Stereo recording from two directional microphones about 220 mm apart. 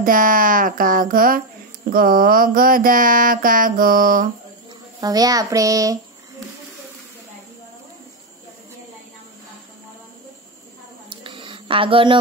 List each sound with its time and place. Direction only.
0.0 s mantra: 40° right (ahead or behind)
5.0 s a child's voice: 15° right (ahead or behind)
11.1 s a sound: 20° right (ahead or behind)